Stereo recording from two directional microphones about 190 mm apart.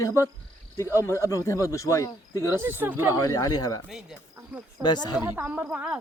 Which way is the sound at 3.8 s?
5° right (ahead or behind).